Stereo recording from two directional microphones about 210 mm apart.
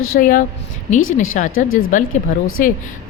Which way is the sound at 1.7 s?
75° left (ahead or behind).